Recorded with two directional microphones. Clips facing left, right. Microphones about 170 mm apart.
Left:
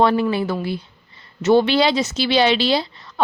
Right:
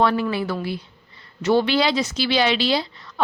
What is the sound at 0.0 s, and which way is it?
A woman's voice, 25° left (ahead or behind).